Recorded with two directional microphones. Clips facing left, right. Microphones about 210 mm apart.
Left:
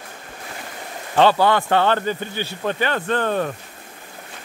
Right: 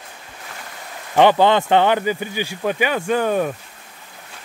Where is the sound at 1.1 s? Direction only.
20° right (ahead or behind).